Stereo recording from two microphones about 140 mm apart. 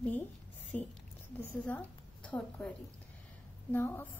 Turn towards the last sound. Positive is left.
turn(degrees=15)  # may be behind; listen again after turning